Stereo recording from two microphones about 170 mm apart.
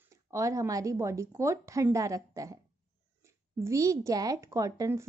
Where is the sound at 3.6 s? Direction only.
15° right (ahead or behind).